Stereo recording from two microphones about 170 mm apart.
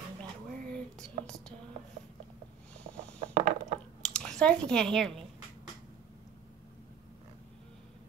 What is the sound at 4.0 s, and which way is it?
Speech, 5° left (ahead or behind).